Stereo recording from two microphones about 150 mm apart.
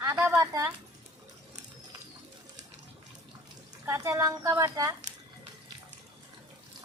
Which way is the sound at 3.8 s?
20° right (ahead or behind).